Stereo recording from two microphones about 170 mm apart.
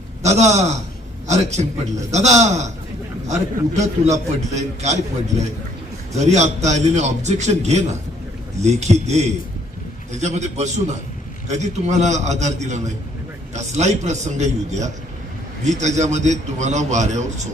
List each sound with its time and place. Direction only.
0.2 s a man's voice: 40° right (ahead or behind)
6.1 s a man's voice: 40° right (ahead or behind)